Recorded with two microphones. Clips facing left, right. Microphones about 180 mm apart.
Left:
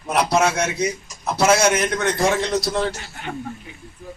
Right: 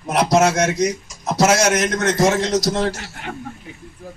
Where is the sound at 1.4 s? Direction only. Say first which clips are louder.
Right 1 dB; 85° right.